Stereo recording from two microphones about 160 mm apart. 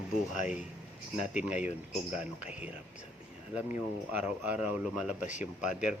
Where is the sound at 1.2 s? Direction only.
10° right (ahead or behind).